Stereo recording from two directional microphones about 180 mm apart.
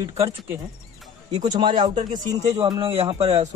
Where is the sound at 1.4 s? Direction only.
25° right (ahead or behind).